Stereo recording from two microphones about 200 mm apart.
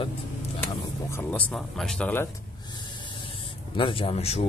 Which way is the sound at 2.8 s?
25° left (ahead or behind).